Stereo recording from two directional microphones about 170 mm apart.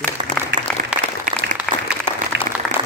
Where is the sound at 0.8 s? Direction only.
50° right (ahead or behind).